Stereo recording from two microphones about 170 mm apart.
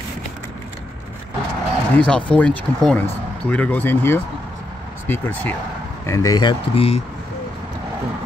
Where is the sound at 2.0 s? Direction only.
5° left (ahead or behind); by 7.0 s 35° left (ahead or behind).